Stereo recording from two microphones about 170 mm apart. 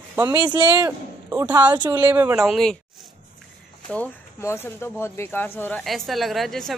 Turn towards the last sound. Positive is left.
turn(degrees=0)  # may be behind; listen again after turning